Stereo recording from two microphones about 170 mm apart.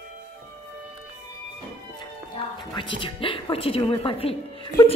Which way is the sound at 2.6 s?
30° left (ahead or behind).